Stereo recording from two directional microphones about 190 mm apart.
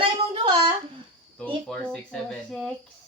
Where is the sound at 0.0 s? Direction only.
30° right (ahead or behind).